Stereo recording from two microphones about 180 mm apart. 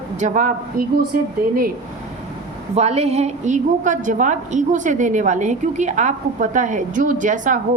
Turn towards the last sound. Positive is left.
turn(degrees=-45)  # may be behind; listen again after turning